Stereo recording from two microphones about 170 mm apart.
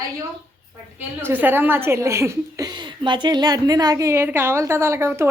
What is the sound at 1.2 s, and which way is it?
A woman's voice, 10° right (ahead or behind).